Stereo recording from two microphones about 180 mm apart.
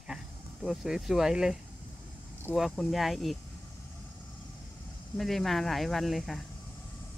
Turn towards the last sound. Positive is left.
turn(degrees=0)  # may be behind; listen again after turning